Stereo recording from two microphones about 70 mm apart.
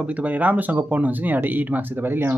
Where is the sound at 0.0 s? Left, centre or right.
Right.